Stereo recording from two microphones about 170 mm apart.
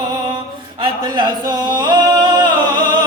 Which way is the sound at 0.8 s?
25° right (ahead or behind).